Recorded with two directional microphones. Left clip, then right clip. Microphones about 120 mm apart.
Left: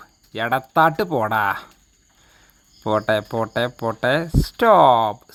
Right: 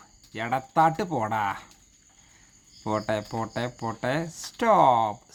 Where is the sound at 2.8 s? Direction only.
45° left (ahead or behind).